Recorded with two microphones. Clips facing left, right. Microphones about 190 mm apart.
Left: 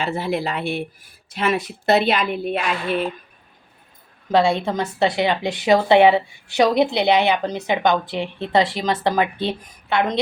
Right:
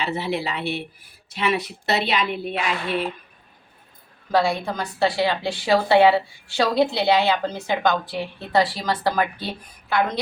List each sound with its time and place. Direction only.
0.0 s a woman's voice: 50° left (ahead or behind)
4.3 s a woman's voice: 20° left (ahead or behind)